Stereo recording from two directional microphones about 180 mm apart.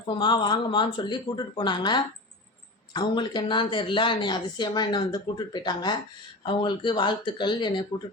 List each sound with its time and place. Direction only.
0.2 s speech: 25° left (ahead or behind)
7.9 s speech: 40° left (ahead or behind)